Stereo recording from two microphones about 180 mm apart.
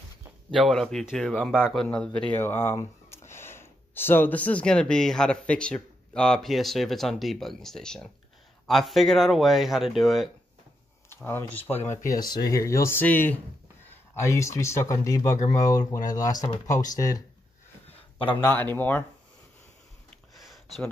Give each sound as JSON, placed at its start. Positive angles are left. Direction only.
{"t": 0.5, "sound": "speech", "side_deg": 0}
{"t": 11.2, "sound": "speech", "side_deg": 10}
{"t": 18.3, "sound": "speech", "side_deg": 10}
{"t": 20.3, "sound": "a sound", "side_deg": 0}